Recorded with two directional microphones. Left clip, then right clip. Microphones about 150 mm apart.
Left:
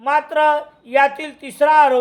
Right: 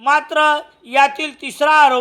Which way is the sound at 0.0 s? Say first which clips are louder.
Right 2 dB; 20° right (ahead or behind).